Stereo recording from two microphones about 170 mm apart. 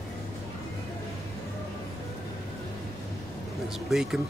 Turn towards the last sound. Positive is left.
turn(degrees=-5)  # may be behind; listen again after turning